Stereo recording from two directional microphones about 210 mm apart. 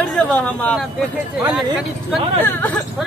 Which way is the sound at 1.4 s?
15° right (ahead or behind).